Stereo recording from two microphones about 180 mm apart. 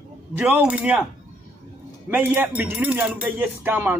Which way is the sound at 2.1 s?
10° right (ahead or behind).